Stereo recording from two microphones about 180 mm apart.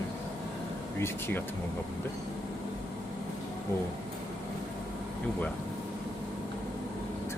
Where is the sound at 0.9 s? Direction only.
15° left (ahead or behind).